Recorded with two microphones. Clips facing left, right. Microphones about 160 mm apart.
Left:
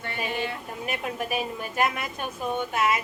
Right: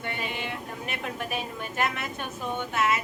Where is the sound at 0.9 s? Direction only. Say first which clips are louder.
Left 4 dB; 10° left (ahead or behind).